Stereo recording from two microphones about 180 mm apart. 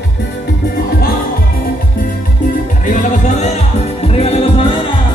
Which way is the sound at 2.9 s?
40° left (ahead or behind).